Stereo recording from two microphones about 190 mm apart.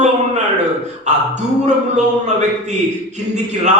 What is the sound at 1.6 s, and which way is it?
A man's voice, 40° right (ahead or behind).